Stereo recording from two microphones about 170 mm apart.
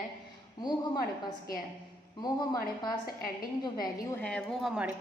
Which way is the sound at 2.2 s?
25° left (ahead or behind).